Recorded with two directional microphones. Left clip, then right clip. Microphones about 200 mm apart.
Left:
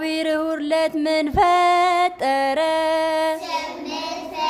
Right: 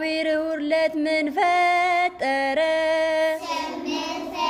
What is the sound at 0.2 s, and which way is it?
Music, 20° left (ahead or behind).